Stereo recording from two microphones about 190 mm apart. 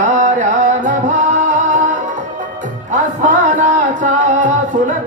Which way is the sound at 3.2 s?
40° right (ahead or behind).